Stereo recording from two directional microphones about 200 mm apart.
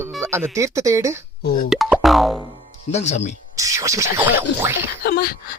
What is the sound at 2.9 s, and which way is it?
Speech, 35° left (ahead or behind).